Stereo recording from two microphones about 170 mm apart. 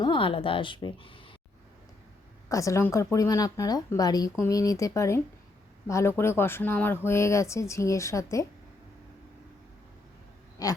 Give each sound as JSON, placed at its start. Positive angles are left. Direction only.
{"t": 0.0, "sound": "speech", "side_deg": 30}
{"t": 2.5, "sound": "a woman's voice", "side_deg": 20}
{"t": 10.6, "sound": "a woman's voice", "side_deg": 20}